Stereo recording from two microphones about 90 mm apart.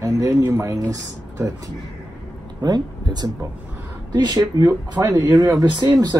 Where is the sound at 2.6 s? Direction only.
50° right (ahead or behind).